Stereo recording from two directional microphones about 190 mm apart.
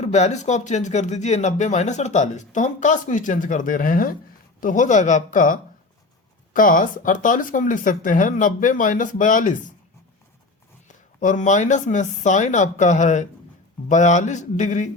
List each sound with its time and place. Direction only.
0.0 s speech: 35° left (ahead or behind)
10.8 s speech: 40° left (ahead or behind)